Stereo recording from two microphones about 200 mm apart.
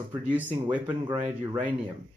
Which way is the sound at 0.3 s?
10° right (ahead or behind).